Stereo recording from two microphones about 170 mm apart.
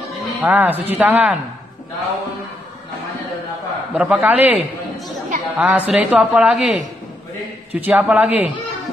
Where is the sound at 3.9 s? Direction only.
5° right (ahead or behind).